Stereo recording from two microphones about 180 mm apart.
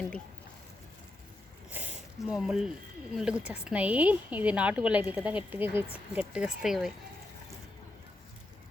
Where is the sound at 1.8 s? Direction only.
10° right (ahead or behind).